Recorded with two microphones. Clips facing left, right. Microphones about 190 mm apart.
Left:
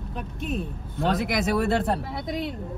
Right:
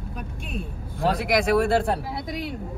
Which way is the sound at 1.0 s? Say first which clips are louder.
Right 2 dB; centre (ahead or behind).